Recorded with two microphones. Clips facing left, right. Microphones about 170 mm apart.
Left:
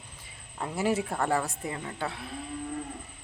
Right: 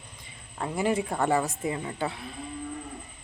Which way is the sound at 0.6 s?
5° left (ahead or behind).